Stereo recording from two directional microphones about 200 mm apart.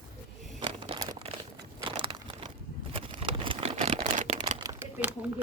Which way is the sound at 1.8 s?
25° right (ahead or behind).